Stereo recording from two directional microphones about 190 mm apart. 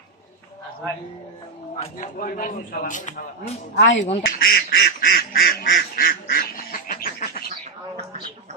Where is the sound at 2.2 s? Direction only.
45° left (ahead or behind).